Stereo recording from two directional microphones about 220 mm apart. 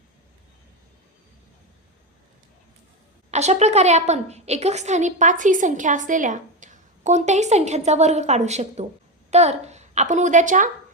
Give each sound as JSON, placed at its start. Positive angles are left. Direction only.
{"t": 3.3, "sound": "a woman's voice", "side_deg": -30}